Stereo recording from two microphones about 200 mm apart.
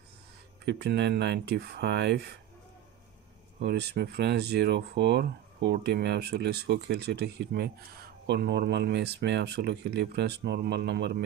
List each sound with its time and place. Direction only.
0.7 s speech: 55° right (ahead or behind)
3.5 s speech: 55° right (ahead or behind)